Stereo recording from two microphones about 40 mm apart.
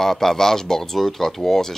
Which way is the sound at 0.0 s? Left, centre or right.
Centre.